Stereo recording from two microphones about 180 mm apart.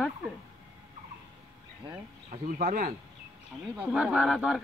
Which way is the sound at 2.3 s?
45° right (ahead or behind).